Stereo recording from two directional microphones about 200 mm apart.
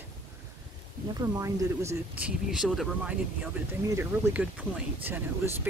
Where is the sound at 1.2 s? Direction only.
15° right (ahead or behind).